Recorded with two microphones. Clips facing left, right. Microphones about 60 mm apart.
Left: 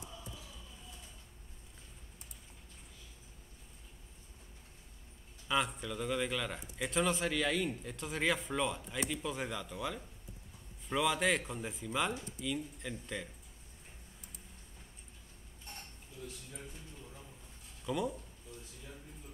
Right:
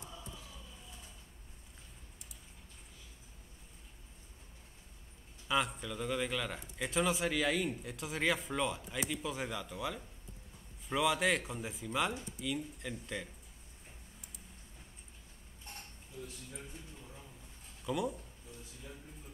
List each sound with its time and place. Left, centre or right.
5.5 s a man's voice: centre
17.8 s a man's voice: centre